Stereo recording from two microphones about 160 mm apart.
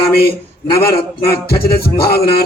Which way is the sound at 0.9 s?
75° left (ahead or behind).